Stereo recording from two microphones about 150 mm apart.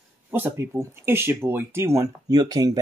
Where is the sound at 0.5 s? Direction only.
20° right (ahead or behind).